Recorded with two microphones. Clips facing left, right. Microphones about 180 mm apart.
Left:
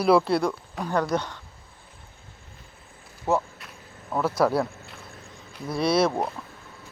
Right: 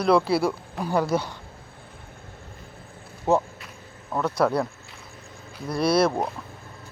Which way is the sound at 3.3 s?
20° right (ahead or behind).